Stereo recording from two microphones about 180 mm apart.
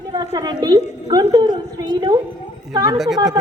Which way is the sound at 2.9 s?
Centre (ahead or behind).